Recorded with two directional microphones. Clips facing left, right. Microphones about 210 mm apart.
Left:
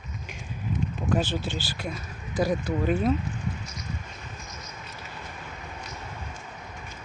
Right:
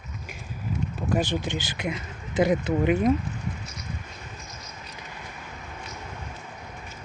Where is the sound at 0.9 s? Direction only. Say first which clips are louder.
Right 2 dB; 10° right (ahead or behind).